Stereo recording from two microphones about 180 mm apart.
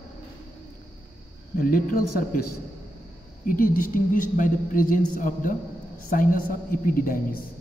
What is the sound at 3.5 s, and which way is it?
A woman's voice, 50° left (ahead or behind).